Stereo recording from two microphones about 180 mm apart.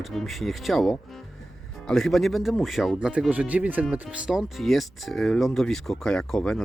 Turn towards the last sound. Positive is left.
turn(degrees=5)  # may be behind; listen again after turning